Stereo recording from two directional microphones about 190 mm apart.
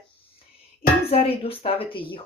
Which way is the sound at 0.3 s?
30° left (ahead or behind).